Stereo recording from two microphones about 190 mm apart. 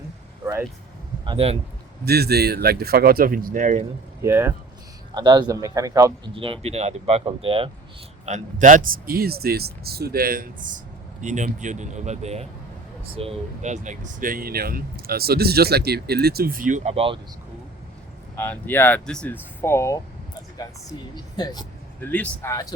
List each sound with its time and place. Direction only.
1.2 s speech: 30° right (ahead or behind)
2.0 s speech: 55° right (ahead or behind); by 3.8 s 40° right (ahead or behind)
4.2 s speech: 15° right (ahead or behind)
6.3 s speech: 30° right (ahead or behind)
8.3 s speech: 40° right (ahead or behind)
18.3 s speech: 10° left (ahead or behind)
21.3 s speech: 20° left (ahead or behind)
22.0 s speech: 10° left (ahead or behind)